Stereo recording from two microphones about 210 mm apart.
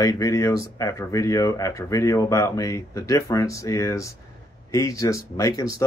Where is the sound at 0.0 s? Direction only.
15° left (ahead or behind).